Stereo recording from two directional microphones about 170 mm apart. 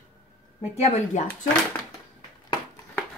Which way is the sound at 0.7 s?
40° left (ahead or behind).